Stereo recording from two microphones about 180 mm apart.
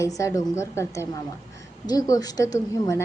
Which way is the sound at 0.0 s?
15° left (ahead or behind).